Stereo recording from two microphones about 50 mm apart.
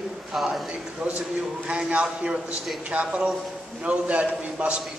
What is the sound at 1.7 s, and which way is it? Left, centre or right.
A man's voice, right.